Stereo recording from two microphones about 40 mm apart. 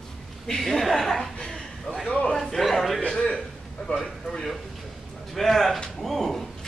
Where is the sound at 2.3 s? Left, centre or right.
Centre.